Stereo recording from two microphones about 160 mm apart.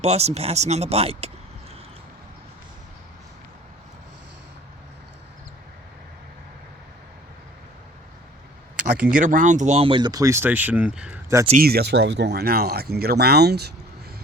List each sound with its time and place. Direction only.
0.0 s speech: 40° right (ahead or behind)
9.0 s speech: 60° right (ahead or behind); by 11.2 s 5° right (ahead or behind)
11.5 s speech: 75° right (ahead or behind)